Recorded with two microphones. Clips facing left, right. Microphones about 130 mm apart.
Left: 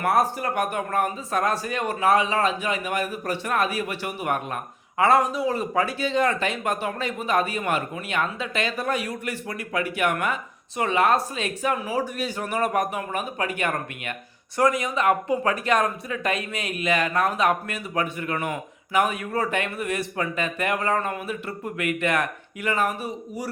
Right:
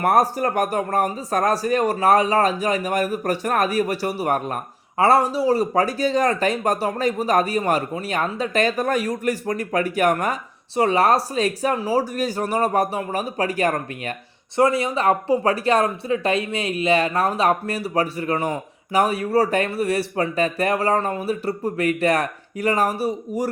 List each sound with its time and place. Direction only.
0.0 s speech: 40° right (ahead or behind)